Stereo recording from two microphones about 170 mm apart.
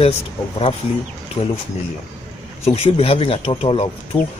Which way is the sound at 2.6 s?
35° left (ahead or behind).